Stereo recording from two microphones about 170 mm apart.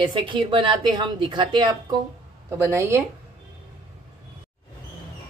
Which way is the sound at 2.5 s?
15° right (ahead or behind).